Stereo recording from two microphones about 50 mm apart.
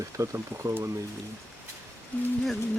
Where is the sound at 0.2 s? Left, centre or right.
Right.